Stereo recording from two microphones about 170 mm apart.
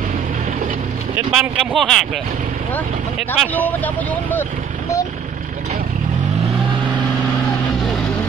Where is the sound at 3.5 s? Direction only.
10° left (ahead or behind).